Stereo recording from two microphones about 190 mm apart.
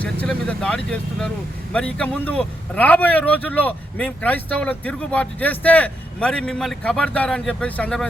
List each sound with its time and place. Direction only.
0.0 s a man's voice: 5° left (ahead or behind)